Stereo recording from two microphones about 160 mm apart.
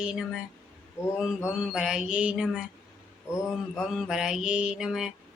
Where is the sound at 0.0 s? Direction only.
5° right (ahead or behind).